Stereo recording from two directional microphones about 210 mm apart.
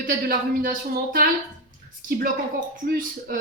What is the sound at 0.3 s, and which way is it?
Speech, 45° right (ahead or behind).